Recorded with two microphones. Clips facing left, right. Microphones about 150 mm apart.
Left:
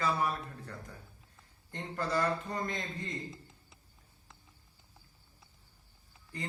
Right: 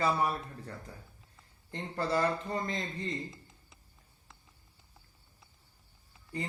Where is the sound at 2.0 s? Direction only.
25° right (ahead or behind).